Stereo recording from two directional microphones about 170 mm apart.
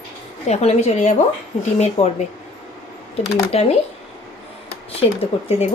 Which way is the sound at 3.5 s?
40° left (ahead or behind).